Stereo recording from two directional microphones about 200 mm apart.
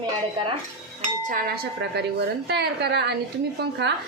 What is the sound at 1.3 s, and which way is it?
A woman's voice, 50° right (ahead or behind).